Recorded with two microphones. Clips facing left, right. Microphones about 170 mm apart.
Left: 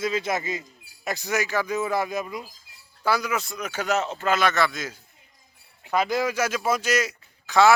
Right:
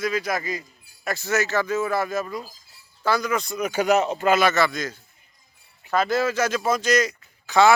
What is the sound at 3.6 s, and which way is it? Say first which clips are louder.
Speech: right 7 dB; 15° right (ahead or behind).